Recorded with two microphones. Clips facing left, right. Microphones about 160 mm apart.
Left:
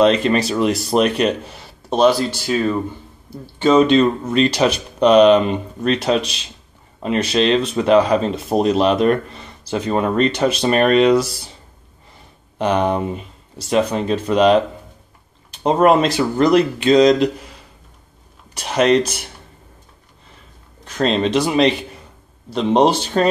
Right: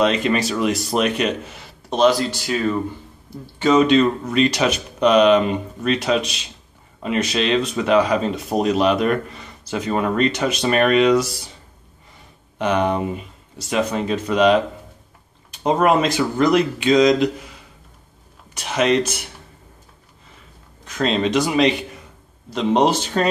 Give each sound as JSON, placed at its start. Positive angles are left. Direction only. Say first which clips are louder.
{"t": 0.0, "sound": "speech", "louder": "left 4 dB", "side_deg": 35}
{"t": 3.6, "sound": "speech", "louder": "left 2 dB", "side_deg": 30}
{"t": 12.5, "sound": "speech", "louder": "left 2 dB", "side_deg": 35}
{"t": 15.6, "sound": "speech", "louder": "left 3 dB", "side_deg": 35}
{"t": 18.5, "sound": "speech", "louder": "left 3 dB", "side_deg": 35}
{"t": 21.3, "sound": "a man's voice", "louder": "even", "side_deg": 30}